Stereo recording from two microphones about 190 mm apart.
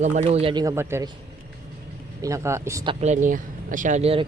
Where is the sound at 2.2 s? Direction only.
15° right (ahead or behind).